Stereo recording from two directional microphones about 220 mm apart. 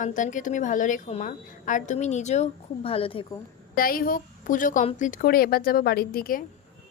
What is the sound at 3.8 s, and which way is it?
A woman's voice, 40° left (ahead or behind).